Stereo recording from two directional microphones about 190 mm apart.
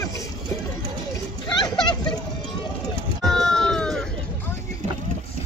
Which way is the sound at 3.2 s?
Centre (ahead or behind).